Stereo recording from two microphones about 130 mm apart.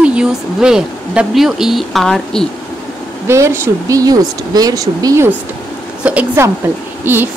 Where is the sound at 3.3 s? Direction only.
20° right (ahead or behind).